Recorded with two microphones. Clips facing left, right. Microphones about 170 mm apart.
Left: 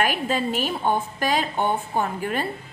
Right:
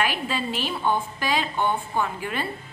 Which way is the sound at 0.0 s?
45° left (ahead or behind).